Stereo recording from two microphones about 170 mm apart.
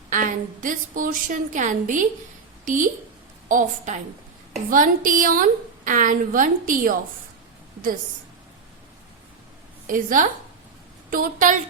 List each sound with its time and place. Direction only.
0.1 s a woman's voice: 50° right (ahead or behind)
9.8 s a woman's voice: 50° right (ahead or behind)